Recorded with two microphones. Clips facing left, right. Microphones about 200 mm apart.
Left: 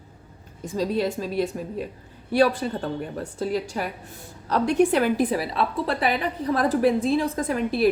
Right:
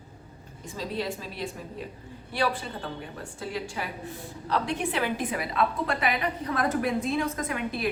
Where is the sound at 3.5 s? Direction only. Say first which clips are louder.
Left 4 dB; 40° left (ahead or behind).